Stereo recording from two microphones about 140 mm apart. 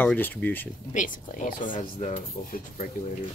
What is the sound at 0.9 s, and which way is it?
Speech, 65° left (ahead or behind).